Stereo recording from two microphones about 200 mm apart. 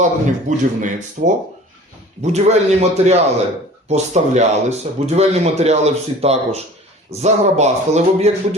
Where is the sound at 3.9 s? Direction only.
35° right (ahead or behind).